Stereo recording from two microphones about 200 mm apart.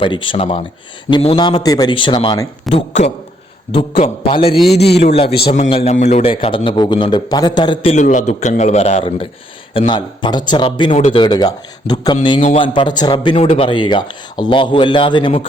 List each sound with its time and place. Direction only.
0.0 s a man's voice: 25° left (ahead or behind)
2.7 s a man's voice: 35° left (ahead or behind)
4.8 s a man's voice: 55° left (ahead or behind)
5.0 s a man's voice: 30° left (ahead or behind)